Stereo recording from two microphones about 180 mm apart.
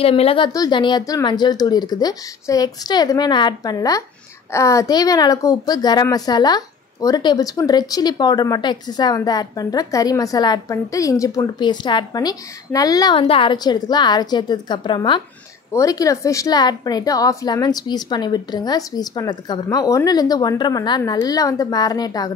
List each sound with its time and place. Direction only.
0.0 s a woman's voice: 30° left (ahead or behind)